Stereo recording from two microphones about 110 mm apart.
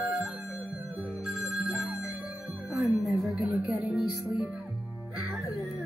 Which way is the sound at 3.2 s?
Centre (ahead or behind).